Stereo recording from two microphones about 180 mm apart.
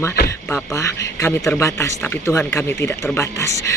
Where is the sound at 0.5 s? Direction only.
15° left (ahead or behind).